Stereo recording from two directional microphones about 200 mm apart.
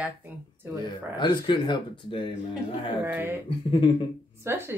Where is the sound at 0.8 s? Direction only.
20° left (ahead or behind).